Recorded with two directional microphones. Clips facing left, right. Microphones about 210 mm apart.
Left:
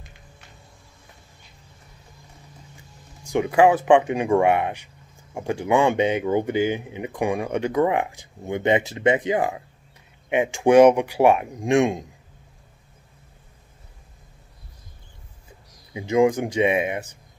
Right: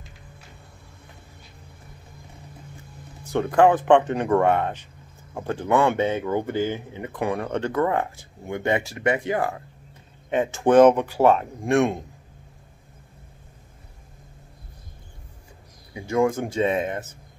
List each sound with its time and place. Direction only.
3.3 s speech: 10° left (ahead or behind)
15.9 s speech: 20° left (ahead or behind)